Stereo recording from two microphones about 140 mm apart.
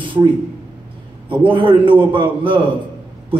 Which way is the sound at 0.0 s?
35° right (ahead or behind).